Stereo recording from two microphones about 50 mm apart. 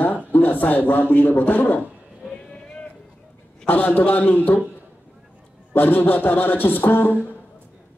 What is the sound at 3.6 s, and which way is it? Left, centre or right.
Speech, left.